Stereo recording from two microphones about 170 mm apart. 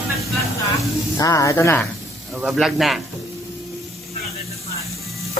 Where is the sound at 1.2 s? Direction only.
20° left (ahead or behind).